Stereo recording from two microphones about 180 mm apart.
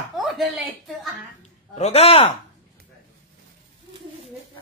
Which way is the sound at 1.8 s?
35° left (ahead or behind).